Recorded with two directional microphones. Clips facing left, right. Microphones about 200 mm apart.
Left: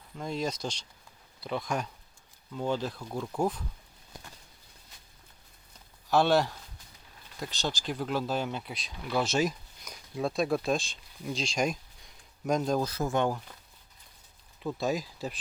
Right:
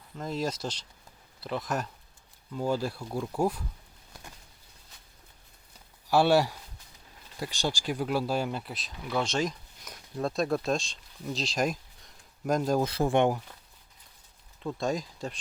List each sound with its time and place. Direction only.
0.2 s speech: 5° right (ahead or behind)
6.1 s speech: 10° right (ahead or behind)
12.8 s speech: 30° right (ahead or behind)
14.6 s speech: 5° left (ahead or behind)